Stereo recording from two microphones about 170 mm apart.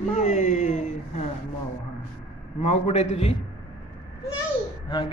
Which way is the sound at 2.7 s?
40° left (ahead or behind).